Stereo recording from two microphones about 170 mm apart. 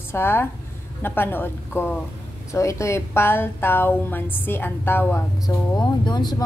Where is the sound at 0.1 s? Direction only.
15° left (ahead or behind).